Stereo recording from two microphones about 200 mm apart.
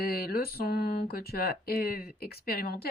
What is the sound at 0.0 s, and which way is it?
Speech, 50° left (ahead or behind).